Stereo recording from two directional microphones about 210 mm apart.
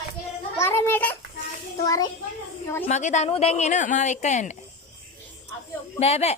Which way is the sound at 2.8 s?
35° left (ahead or behind).